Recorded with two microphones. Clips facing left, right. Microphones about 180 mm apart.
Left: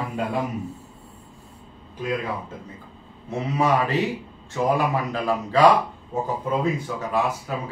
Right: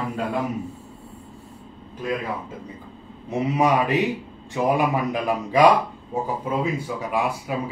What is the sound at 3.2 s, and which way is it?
Speech, 15° right (ahead or behind).